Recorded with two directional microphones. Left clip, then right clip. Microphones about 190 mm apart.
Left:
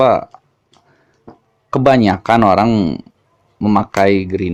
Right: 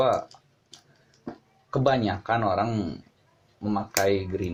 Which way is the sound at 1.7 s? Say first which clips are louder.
Left 12 dB; 50° left (ahead or behind).